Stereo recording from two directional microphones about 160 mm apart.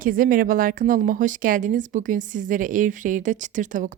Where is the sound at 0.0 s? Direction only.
60° right (ahead or behind).